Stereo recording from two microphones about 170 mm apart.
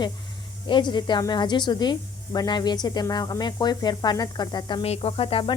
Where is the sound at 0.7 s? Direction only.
25° left (ahead or behind).